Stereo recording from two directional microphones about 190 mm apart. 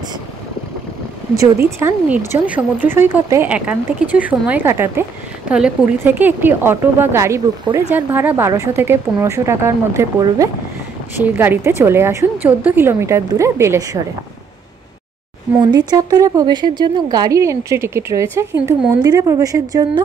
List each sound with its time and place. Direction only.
1.8 s speech: 10° right (ahead or behind)
15.6 s speech: 20° right (ahead or behind)